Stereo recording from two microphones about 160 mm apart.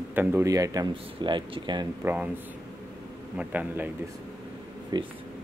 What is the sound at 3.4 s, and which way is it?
Speech, 10° right (ahead or behind).